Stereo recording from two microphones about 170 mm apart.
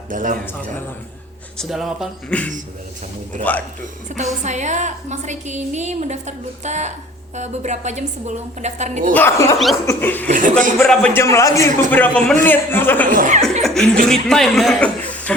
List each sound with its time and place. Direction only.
0.1 s a woman's voice: 50° right (ahead or behind)
1.5 s a man's voice: centre (ahead or behind)
4.4 s a woman's voice: 45° right (ahead or behind)
9.1 s a man's voice: 15° left (ahead or behind)
10.2 s a woman's voice: 50° right (ahead or behind)
10.8 s a man's voice: 10° left (ahead or behind)
13.1 s a woman's voice: 45° right (ahead or behind)
13.4 s chuckle: centre (ahead or behind)
14.1 s a man's voice: centre (ahead or behind)